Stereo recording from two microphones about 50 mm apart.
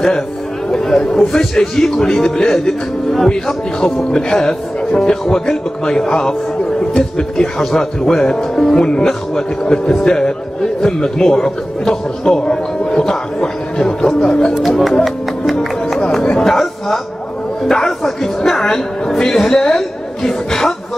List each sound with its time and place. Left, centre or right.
0.7 s speech: centre
14.5 s speech: centre
16.0 s a sound: centre
17.6 s speech: centre